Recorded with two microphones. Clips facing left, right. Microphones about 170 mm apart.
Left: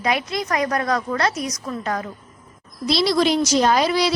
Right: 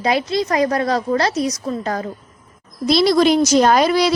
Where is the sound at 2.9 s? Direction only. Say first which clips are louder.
Right 5 dB; 50° right (ahead or behind).